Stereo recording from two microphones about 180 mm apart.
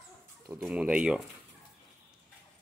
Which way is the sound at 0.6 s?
5° right (ahead or behind).